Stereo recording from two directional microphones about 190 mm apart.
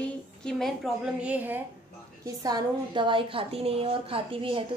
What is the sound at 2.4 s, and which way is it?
A woman's voice, 20° right (ahead or behind).